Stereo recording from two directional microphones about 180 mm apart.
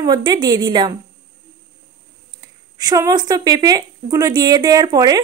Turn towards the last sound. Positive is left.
turn(degrees=-20)  # may be behind; listen again after turning